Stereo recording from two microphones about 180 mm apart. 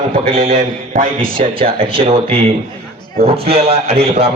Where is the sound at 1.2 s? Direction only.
30° right (ahead or behind).